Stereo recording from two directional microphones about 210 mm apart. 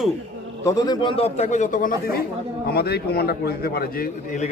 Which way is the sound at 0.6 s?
20° left (ahead or behind).